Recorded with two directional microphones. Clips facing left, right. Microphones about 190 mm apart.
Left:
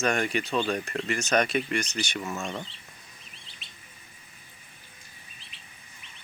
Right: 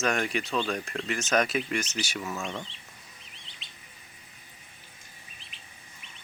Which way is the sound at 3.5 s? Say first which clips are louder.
Even; 15° right (ahead or behind).